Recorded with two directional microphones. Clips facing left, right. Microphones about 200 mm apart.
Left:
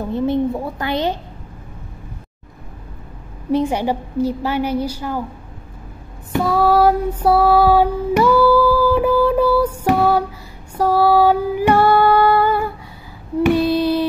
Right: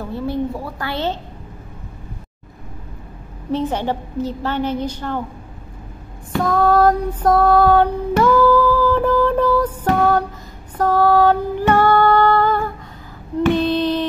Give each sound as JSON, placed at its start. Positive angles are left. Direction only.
{"t": 0.1, "sound": "a woman's voice", "side_deg": 20}
{"t": 3.5, "sound": "a woman's voice", "side_deg": 10}
{"t": 6.3, "sound": "female singing", "side_deg": 10}